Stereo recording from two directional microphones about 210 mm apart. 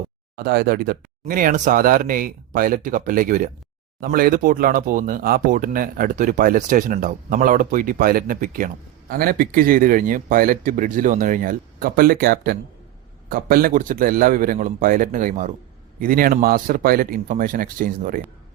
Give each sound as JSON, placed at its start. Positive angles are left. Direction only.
{"t": 0.3, "sound": "speech", "side_deg": -45}